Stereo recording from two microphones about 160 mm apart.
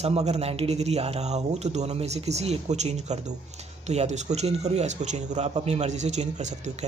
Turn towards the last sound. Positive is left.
turn(degrees=-45)  # may be behind; listen again after turning